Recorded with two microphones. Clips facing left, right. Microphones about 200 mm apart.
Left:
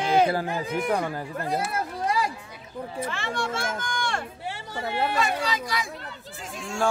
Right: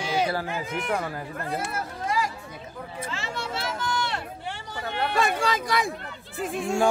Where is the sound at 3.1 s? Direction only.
50° left (ahead or behind).